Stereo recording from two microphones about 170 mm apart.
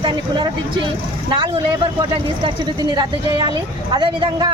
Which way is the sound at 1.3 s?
30° right (ahead or behind).